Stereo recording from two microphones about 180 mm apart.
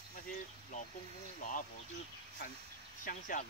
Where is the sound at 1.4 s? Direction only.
45° left (ahead or behind).